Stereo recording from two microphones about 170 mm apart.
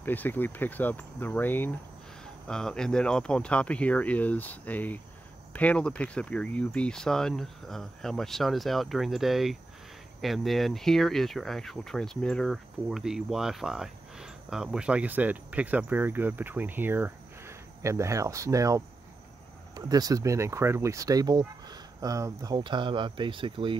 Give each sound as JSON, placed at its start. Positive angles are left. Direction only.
{"t": 0.0, "sound": "speech", "side_deg": 10}